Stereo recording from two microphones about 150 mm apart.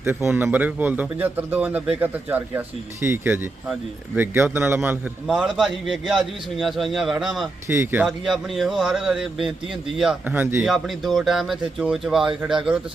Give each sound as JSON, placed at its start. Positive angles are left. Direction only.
{"t": 0.0, "sound": "a man's voice", "side_deg": -15}
{"t": 7.7, "sound": "a man's voice", "side_deg": -15}
{"t": 8.0, "sound": "speech", "side_deg": 0}
{"t": 10.2, "sound": "a man's voice", "side_deg": -15}
{"t": 10.6, "sound": "speech", "side_deg": 0}